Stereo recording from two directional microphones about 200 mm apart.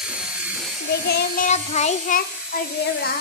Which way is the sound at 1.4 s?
35° left (ahead or behind).